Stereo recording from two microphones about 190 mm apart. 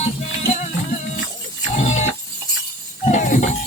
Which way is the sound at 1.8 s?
35° left (ahead or behind).